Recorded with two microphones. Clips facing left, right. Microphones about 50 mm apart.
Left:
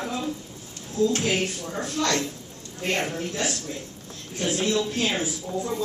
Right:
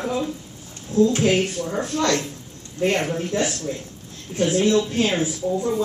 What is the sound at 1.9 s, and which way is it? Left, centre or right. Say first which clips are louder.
A woman's voice: right 3 dB; centre.